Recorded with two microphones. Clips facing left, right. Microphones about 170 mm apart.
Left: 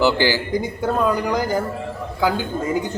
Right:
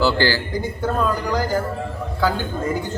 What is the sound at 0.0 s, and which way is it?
Speech, 15° left (ahead or behind).